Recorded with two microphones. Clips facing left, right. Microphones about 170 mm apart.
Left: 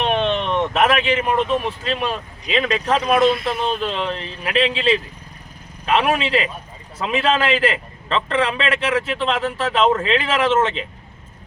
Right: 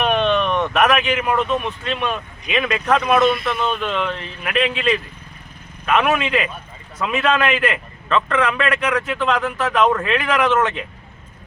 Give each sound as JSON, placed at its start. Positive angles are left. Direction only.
{"t": 0.0, "sound": "a man's voice", "side_deg": 25}